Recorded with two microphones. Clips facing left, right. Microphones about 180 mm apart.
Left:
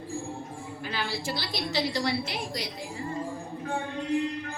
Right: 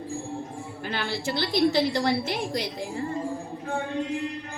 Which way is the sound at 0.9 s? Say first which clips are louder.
Right 4 dB; 55° right (ahead or behind).